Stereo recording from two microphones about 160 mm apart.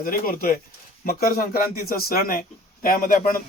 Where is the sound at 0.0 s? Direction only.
60° left (ahead or behind).